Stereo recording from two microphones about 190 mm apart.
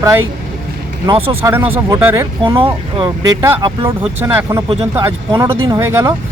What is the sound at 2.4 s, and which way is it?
Speech, 25° right (ahead or behind).